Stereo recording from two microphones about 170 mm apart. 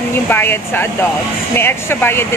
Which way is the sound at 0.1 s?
15° left (ahead or behind).